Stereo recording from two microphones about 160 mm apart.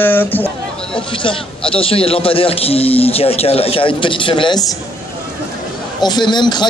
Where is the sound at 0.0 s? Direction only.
10° left (ahead or behind).